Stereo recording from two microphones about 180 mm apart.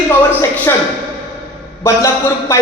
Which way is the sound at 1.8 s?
15° left (ahead or behind).